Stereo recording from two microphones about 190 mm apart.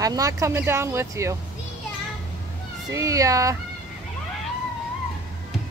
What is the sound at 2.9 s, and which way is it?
Speech, 15° right (ahead or behind).